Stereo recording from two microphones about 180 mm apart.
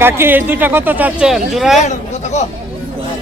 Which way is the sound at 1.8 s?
40° left (ahead or behind).